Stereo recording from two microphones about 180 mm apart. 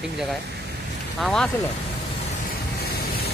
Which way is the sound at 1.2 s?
5° left (ahead or behind).